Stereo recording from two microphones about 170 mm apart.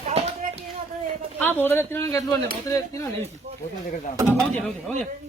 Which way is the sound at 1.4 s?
10° left (ahead or behind).